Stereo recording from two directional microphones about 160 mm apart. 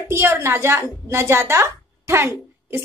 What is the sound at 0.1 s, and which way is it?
A woman's voice, 15° right (ahead or behind).